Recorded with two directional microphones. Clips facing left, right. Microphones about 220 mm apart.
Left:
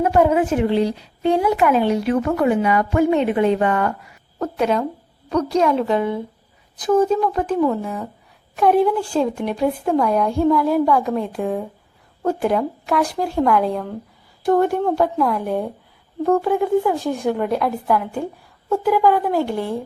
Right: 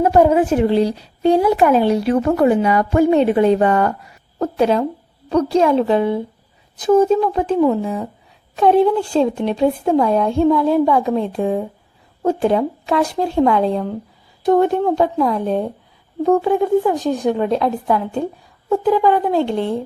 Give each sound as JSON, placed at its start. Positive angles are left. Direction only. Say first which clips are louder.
{"t": 0.0, "sound": "a woman's voice", "louder": "right 3 dB", "side_deg": -35}